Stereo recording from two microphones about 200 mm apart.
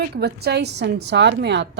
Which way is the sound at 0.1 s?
55° right (ahead or behind).